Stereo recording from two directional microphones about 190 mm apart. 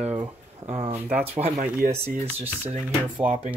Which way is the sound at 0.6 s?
35° right (ahead or behind).